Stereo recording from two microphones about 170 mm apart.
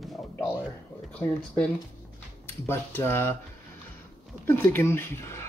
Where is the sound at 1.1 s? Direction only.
5° left (ahead or behind).